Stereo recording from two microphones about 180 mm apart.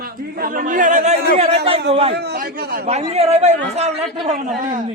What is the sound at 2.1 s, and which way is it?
Speech, 65° right (ahead or behind).